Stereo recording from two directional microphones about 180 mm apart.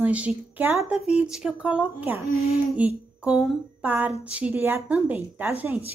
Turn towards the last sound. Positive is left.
turn(degrees=-10)  # may be behind; listen again after turning